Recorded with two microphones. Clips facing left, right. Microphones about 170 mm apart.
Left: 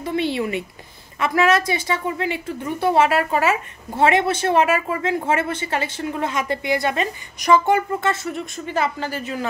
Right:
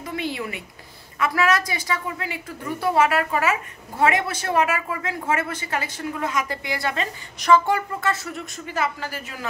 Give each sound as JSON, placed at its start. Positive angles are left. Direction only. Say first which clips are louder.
{"t": 0.0, "sound": "a woman's voice", "louder": "left 6 dB", "side_deg": 30}